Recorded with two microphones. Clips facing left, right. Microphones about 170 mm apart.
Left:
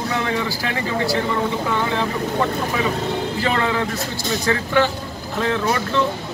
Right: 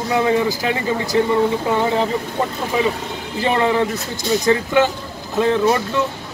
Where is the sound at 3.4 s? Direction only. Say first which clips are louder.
Right 6 dB; 20° right (ahead or behind).